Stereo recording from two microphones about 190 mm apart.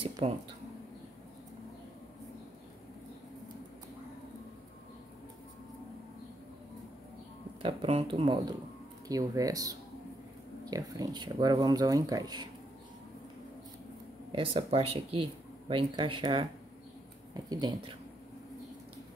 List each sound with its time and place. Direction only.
0.2 s speech: 30° right (ahead or behind)
7.6 s speech: 30° right (ahead or behind)
14.3 s speech: 30° right (ahead or behind)